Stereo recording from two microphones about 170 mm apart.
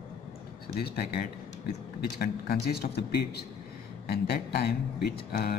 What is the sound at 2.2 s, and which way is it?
A man's voice, 65° left (ahead or behind).